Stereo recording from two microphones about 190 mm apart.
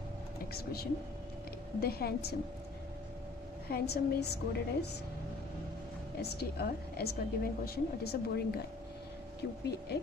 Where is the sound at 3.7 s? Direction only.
55° left (ahead or behind).